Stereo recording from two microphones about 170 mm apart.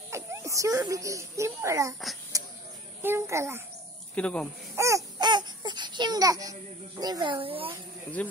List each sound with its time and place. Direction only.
0.1 s a child's voice: 15° right (ahead or behind)
2.3 s a sound: 20° right (ahead or behind)
3.0 s a child's voice: 15° right (ahead or behind)
4.1 s speech: 5° left (ahead or behind)
4.7 s baby cry: 20° right (ahead or behind)
7.0 s speech: 25° right (ahead or behind)
8.2 s speech: 10° left (ahead or behind)